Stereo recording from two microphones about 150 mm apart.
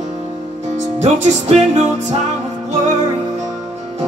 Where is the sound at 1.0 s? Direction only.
50° right (ahead or behind).